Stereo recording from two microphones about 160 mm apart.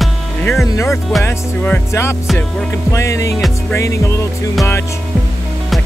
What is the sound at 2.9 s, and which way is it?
Music, 20° left (ahead or behind).